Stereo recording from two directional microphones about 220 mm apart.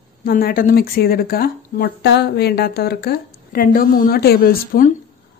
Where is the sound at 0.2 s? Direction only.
40° left (ahead or behind).